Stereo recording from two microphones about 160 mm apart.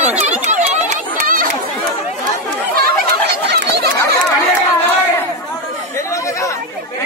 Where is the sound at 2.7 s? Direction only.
80° right.